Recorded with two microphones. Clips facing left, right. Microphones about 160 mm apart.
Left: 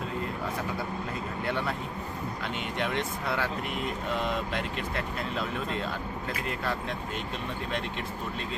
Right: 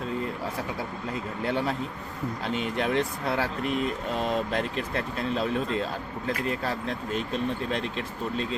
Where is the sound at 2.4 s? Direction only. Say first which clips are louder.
Right 5 dB; 35° right (ahead or behind).